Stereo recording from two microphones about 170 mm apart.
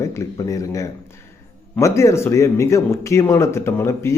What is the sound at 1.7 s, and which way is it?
A man's voice, 15° left (ahead or behind).